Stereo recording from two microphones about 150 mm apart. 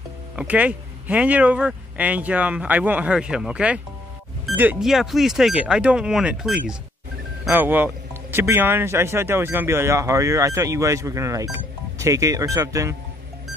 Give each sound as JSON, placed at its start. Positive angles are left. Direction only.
{"t": 0.4, "sound": "speech", "side_deg": -10}